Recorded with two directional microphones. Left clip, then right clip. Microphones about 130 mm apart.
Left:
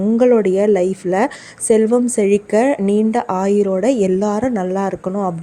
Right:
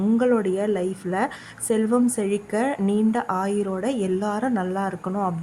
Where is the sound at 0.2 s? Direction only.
35° left (ahead or behind).